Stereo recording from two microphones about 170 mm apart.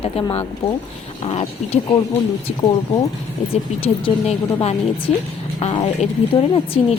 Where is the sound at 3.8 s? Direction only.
35° left (ahead or behind).